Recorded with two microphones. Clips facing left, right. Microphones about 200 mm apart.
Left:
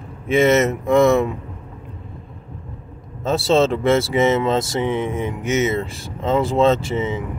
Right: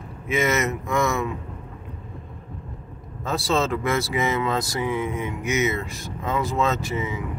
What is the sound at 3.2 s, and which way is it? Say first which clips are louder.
Speech: left 7 dB; 25° left (ahead or behind).